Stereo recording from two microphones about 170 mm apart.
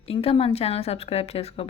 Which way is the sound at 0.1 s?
35° left (ahead or behind).